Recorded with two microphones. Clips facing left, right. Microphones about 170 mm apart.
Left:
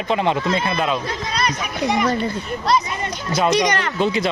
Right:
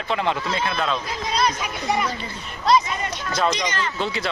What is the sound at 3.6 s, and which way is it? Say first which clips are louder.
Speech: left 6 dB; 65° left (ahead or behind).